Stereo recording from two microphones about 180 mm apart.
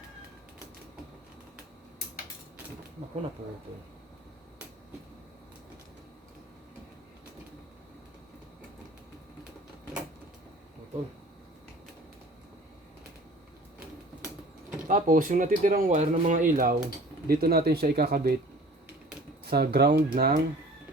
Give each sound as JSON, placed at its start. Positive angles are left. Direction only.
{"t": 14.8, "sound": "speech", "side_deg": -50}
{"t": 19.5, "sound": "speech", "side_deg": -60}